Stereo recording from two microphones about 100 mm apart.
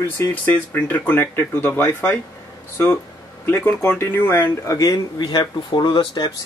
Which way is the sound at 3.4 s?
20° left (ahead or behind).